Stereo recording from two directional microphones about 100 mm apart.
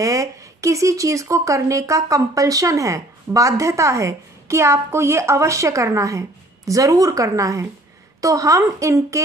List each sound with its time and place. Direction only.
0.0 s speech: 30° right (ahead or behind)